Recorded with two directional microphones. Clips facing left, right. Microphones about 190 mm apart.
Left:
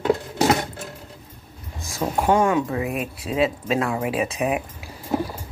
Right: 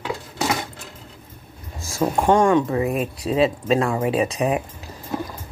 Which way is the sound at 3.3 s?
Centre (ahead or behind).